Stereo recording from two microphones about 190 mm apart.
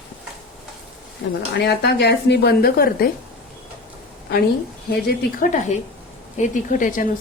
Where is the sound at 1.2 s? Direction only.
65° left (ahead or behind).